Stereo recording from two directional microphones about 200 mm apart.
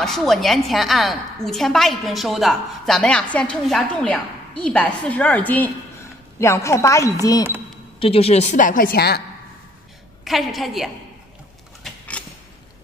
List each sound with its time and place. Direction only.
0.0 s a woman's voice: centre (ahead or behind); by 7.4 s 15° left (ahead or behind)
8.0 s a woman's voice: 30° left (ahead or behind); by 9.2 s 55° left (ahead or behind)
10.2 s a woman's voice: centre (ahead or behind)
11.8 s a sound: centre (ahead or behind)